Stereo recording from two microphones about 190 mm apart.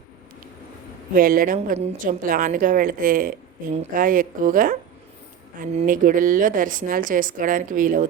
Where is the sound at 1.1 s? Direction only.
45° right (ahead or behind).